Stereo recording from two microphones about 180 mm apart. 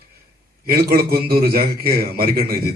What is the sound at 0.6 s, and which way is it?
A man's voice, 55° right (ahead or behind).